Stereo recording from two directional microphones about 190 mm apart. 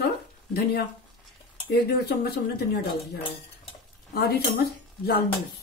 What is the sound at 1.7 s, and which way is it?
Speech, 55° left (ahead or behind).